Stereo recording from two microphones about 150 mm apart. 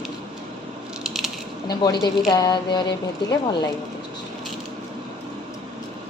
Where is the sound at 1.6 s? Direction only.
30° left (ahead or behind).